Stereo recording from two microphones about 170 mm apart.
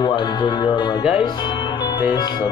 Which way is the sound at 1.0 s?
5° right (ahead or behind).